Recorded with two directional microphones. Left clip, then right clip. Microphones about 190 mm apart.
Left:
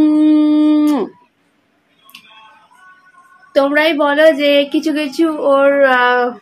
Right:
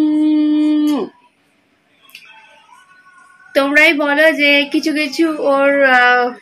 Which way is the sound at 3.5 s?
10° left (ahead or behind).